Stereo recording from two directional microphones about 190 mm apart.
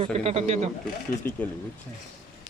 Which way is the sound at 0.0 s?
30° right (ahead or behind).